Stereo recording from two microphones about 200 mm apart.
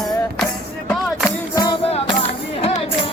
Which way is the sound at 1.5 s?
20° left (ahead or behind).